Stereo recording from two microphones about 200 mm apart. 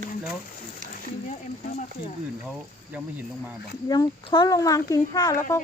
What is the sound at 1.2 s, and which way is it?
Speech, 35° left (ahead or behind).